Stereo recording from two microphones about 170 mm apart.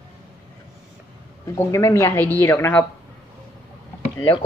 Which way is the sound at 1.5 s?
15° left (ahead or behind).